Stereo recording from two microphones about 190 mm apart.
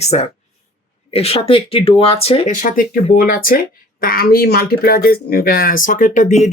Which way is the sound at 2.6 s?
45° left (ahead or behind).